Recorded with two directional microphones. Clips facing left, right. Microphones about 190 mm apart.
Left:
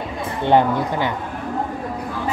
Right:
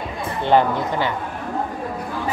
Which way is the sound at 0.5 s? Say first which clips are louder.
Left 1 dB; 15° left (ahead or behind).